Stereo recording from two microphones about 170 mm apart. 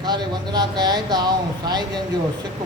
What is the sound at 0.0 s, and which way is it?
A man's voice, 25° right (ahead or behind).